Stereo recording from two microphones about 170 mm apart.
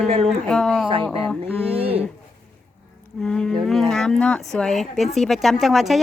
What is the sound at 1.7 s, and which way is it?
Speech, 35° right (ahead or behind).